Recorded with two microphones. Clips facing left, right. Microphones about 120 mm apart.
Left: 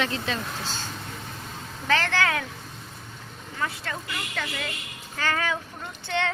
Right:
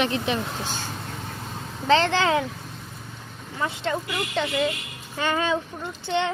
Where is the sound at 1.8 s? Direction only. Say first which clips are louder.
Right 5 dB; 25° right (ahead or behind).